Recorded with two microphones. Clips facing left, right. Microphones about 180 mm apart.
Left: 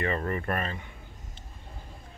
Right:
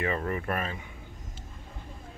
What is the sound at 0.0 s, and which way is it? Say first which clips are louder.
Speech: even; 5° right (ahead or behind).